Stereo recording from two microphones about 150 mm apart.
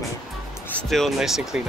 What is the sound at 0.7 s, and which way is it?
Speech, centre (ahead or behind).